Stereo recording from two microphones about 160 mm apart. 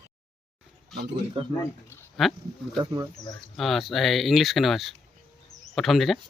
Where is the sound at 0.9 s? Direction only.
Centre (ahead or behind).